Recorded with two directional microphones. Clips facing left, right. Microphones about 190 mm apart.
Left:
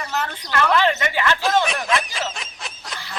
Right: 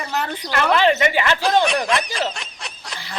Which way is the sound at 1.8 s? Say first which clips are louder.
Right 2 dB; centre (ahead or behind).